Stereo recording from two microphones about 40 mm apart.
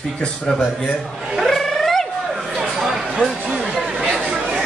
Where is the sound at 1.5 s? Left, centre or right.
Centre.